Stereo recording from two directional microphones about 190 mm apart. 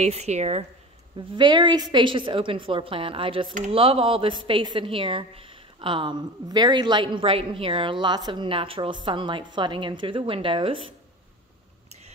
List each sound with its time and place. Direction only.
0.0 s speech: 35° right (ahead or behind)
1.3 s a woman's voice: 25° right (ahead or behind)